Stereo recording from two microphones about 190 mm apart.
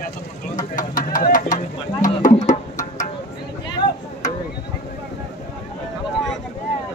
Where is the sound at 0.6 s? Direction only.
45° left (ahead or behind).